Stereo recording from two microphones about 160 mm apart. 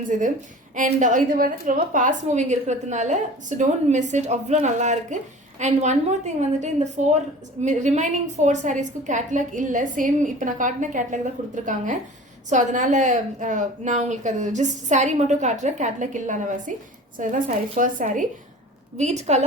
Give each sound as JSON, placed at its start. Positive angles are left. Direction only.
{"t": 0.0, "sound": "a woman's voice", "side_deg": -55}
{"t": 18.9, "sound": "a woman's voice", "side_deg": -45}